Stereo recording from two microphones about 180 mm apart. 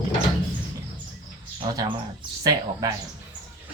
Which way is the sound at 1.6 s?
25° right (ahead or behind).